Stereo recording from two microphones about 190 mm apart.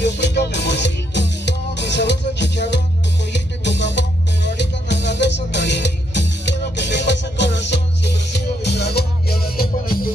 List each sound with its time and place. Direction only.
0.0 s music: 65° left (ahead or behind)